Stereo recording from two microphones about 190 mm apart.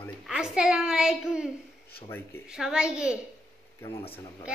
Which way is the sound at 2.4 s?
5° right (ahead or behind).